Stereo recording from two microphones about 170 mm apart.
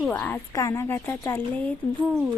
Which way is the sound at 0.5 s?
20° left (ahead or behind).